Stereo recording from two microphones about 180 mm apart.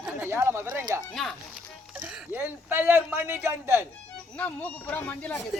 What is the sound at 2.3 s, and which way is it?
Speech, 10° right (ahead or behind).